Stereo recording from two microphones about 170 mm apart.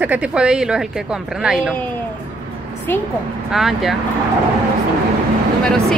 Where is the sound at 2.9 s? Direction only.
15° left (ahead or behind).